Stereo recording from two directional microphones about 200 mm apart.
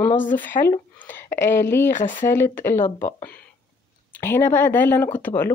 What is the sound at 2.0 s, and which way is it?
Speech, 40° left (ahead or behind).